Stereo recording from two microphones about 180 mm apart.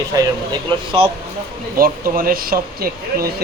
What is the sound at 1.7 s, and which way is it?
Speech, 55° right (ahead or behind).